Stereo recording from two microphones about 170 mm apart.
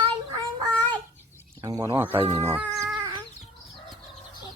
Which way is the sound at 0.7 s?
10° left (ahead or behind).